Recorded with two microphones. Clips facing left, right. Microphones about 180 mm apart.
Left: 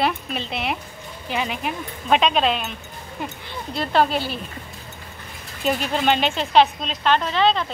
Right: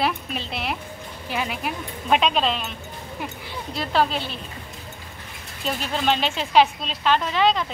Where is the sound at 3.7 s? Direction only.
Centre (ahead or behind).